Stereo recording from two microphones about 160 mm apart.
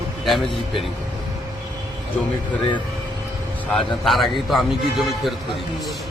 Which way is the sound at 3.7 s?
Centre (ahead or behind).